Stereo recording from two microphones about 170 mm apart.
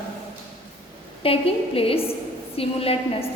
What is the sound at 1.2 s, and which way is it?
A woman's voice, 35° left (ahead or behind).